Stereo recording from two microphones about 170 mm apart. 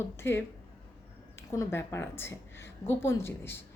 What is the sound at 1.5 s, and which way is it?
Speech, 15° left (ahead or behind).